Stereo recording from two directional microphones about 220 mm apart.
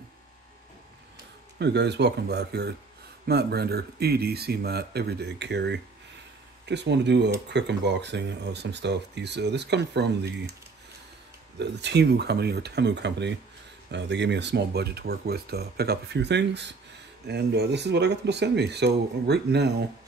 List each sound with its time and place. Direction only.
1.6 s speech: 50° right (ahead or behind)
11.5 s speech: 50° right (ahead or behind)